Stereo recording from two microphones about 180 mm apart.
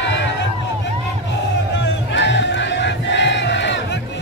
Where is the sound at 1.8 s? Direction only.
80° left.